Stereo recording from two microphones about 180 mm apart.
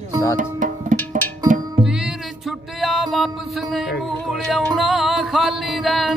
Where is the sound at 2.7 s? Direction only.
Centre (ahead or behind).